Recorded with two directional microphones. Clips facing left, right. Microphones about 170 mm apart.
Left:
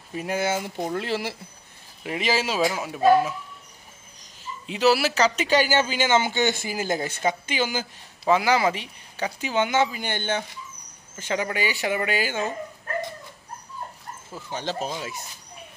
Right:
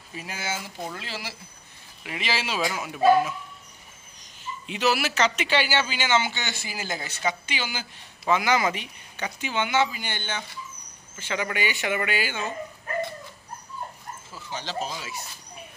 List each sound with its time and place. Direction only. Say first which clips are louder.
0.1 s speech: left 8 dB; 55° left (ahead or behind)
2.0 s speech: left 5 dB; 45° left (ahead or behind)
4.6 s a man's voice: left 4 dB; 35° left (ahead or behind)
8.3 s speech: left 3 dB; 30° left (ahead or behind); by 10.4 s 50° left (ahead or behind)
11.1 s speech: left 2 dB; 40° left (ahead or behind)
14.5 s a man's voice: left 3 dB; 55° left (ahead or behind)